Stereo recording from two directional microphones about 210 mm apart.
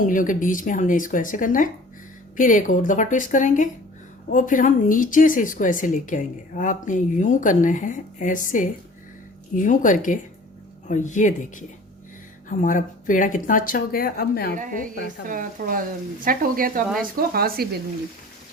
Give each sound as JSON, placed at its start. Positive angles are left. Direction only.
{"t": 0.0, "sound": "speech", "side_deg": 40}
{"t": 12.5, "sound": "speech", "side_deg": 40}
{"t": 14.5, "sound": "speech", "side_deg": -40}